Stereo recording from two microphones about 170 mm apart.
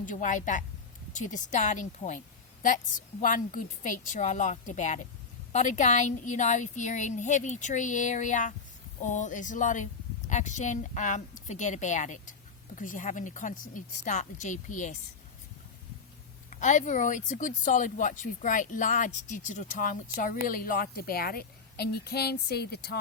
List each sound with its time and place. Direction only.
0.0 s a woman's voice: 50° left (ahead or behind)
16.6 s a woman's voice: 45° left (ahead or behind); by 23.0 s 70° left (ahead or behind)